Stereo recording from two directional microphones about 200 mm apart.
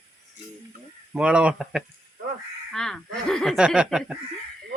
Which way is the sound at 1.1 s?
5° right (ahead or behind).